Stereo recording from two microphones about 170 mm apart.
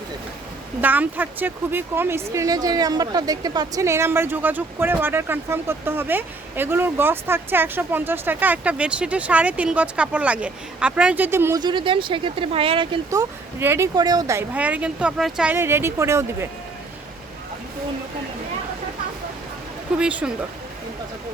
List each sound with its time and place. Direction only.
0.8 s speech: 10° right (ahead or behind)
11.6 s speech: 30° right (ahead or behind)
13.1 s speech: 15° right (ahead or behind)
20.0 s speech: 5° right (ahead or behind)